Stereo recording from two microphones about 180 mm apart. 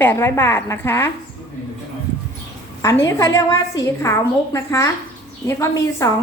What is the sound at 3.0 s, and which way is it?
A woman's voice, 15° left (ahead or behind).